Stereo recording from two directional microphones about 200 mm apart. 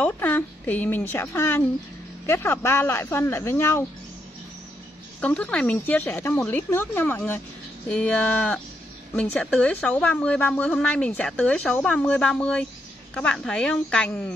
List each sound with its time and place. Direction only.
0.0 s speech: 10° left (ahead or behind)
5.2 s a woman's voice: 5° left (ahead or behind)